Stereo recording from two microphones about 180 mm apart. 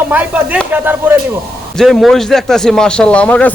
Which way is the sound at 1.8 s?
Centre (ahead or behind).